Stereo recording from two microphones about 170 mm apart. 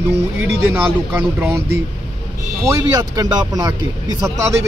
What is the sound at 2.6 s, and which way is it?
A man's voice, 20° right (ahead or behind).